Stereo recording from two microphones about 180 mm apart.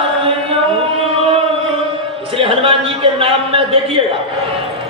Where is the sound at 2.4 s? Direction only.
30° right (ahead or behind).